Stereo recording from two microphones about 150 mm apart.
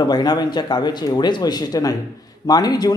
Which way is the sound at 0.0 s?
25° left (ahead or behind).